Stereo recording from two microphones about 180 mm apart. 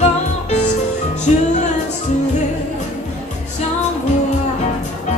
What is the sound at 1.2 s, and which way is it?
Music, 40° left (ahead or behind).